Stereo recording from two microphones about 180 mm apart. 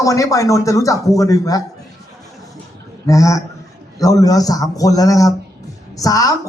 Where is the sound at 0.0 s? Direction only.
20° left (ahead or behind).